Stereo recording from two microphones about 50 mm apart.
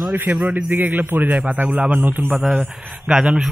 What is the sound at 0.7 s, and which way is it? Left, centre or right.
Speech, right.